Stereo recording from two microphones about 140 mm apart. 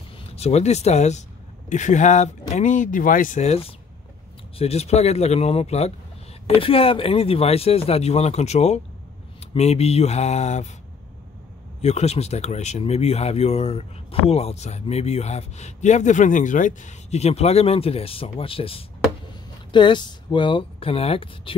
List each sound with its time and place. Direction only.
0.3 s speech: 50° left (ahead or behind)
11.8 s speech: 50° left (ahead or behind)